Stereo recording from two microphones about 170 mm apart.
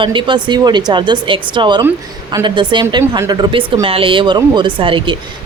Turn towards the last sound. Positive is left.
turn(degrees=-30)  # may be behind; listen again after turning